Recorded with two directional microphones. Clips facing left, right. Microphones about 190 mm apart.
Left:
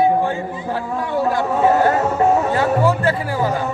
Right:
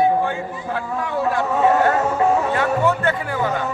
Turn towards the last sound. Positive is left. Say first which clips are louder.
# left 2 dB
turn(degrees=35)  # may be behind; listen again after turning